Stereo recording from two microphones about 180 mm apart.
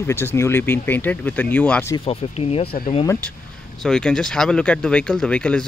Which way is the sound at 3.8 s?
5° left (ahead or behind).